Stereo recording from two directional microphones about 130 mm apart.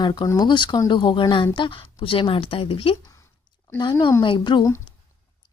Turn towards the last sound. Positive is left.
turn(degrees=40)  # may be behind; listen again after turning